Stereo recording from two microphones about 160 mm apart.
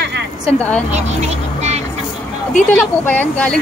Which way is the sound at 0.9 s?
45° right (ahead or behind).